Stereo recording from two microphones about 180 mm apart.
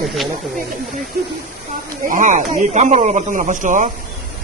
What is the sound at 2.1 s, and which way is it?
Speech, 45° right (ahead or behind).